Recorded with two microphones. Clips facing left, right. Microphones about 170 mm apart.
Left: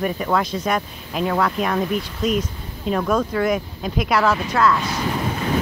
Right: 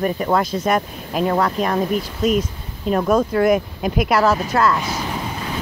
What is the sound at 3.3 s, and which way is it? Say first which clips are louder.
Speech: right 5 dB; 55° right (ahead or behind).